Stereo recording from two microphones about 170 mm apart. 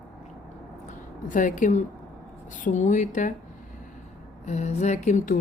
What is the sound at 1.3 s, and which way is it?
Speech, 50° left (ahead or behind).